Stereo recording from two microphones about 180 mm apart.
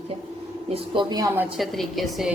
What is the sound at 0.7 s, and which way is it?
Speech, 25° right (ahead or behind).